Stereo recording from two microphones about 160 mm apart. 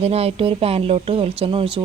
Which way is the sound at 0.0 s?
40° right (ahead or behind).